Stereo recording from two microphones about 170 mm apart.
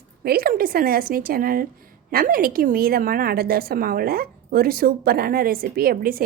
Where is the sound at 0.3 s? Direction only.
60° right (ahead or behind).